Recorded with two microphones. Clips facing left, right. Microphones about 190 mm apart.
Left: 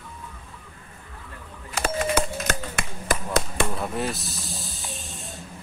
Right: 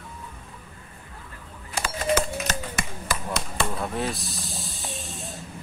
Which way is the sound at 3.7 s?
Centre (ahead or behind).